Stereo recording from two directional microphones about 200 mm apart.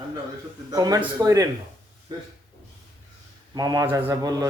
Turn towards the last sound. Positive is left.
turn(degrees=-20)  # may be behind; listen again after turning